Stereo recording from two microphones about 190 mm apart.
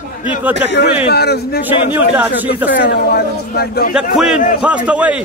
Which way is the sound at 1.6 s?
10° right (ahead or behind).